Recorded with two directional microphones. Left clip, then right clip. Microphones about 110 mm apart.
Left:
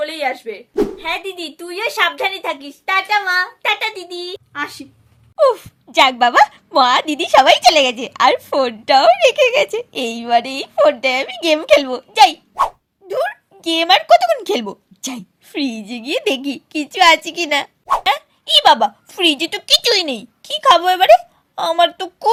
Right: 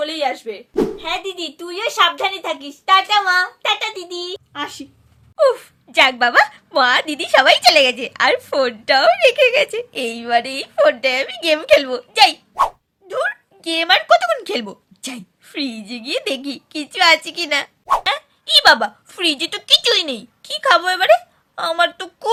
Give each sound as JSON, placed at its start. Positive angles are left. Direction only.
{"t": 0.0, "sound": "a sound", "side_deg": 5}
{"t": 1.0, "sound": "a woman's voice", "side_deg": 10}
{"t": 4.5, "sound": "speech", "side_deg": 0}
{"t": 5.4, "sound": "a woman's voice", "side_deg": 25}